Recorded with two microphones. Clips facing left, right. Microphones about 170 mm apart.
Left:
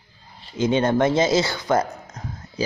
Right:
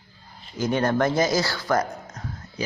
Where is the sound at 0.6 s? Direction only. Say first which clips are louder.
Left 3 dB; 20° left (ahead or behind).